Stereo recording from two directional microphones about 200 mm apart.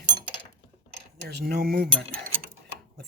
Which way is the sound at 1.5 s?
50° right (ahead or behind).